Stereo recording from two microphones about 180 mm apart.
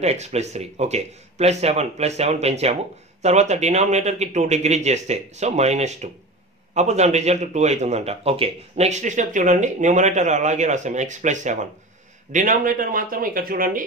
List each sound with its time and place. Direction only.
0.0 s speech: 35° right (ahead or behind)